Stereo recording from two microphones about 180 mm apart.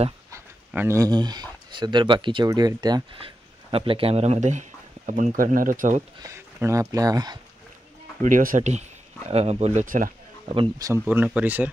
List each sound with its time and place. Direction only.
0.3 s speech: 15° right (ahead or behind); by 6.0 s 45° right (ahead or behind)
6.2 s speech: 15° right (ahead or behind)
8.2 s speech: 50° right (ahead or behind)
10.5 s speech: 25° right (ahead or behind)
11.1 s speech: 5° right (ahead or behind)